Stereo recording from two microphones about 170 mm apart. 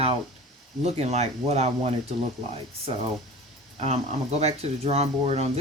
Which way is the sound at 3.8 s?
40° right (ahead or behind).